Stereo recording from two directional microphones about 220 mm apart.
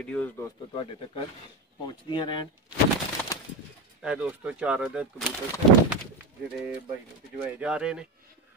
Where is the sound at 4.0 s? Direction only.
5° right (ahead or behind).